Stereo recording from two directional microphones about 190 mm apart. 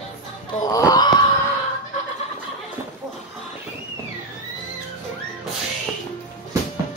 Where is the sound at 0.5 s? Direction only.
20° left (ahead or behind).